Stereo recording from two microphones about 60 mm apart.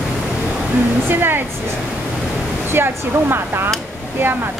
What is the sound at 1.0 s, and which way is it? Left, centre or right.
Speech, right.